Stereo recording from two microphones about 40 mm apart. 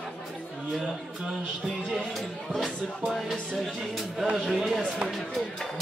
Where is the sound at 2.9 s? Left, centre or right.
Centre.